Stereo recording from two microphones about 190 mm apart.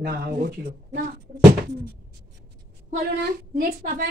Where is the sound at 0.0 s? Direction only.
55° right (ahead or behind).